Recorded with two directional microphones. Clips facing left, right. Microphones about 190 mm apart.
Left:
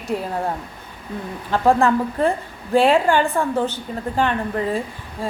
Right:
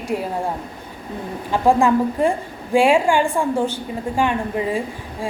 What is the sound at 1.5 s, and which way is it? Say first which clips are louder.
A woman's voice: right 1 dB; 15° right (ahead or behind).